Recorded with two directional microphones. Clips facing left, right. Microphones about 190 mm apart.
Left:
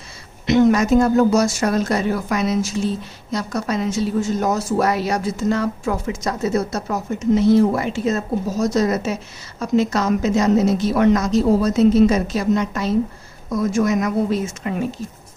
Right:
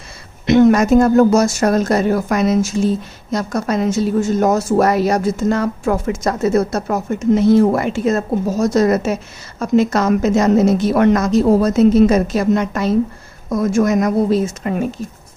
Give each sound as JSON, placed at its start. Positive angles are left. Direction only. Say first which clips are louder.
{"t": 0.5, "sound": "a woman's voice", "louder": "right 4 dB", "side_deg": -55}